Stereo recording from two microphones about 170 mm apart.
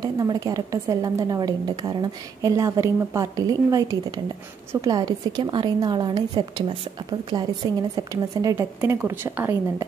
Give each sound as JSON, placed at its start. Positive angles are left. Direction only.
{"t": 0.0, "sound": "a woman's voice", "side_deg": -20}